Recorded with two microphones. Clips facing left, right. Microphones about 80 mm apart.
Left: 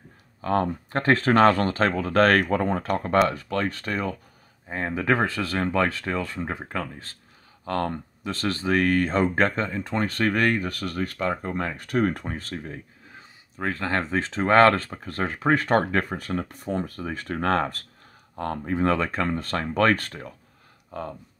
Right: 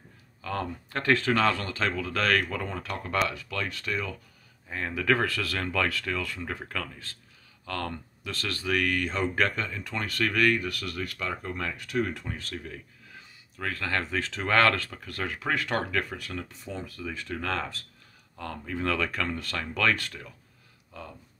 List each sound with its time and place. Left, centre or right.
0.4 s speech: left
16.4 s speech: left